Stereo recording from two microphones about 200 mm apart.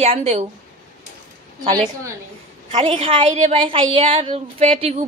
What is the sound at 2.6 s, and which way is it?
A woman's voice, 25° right (ahead or behind).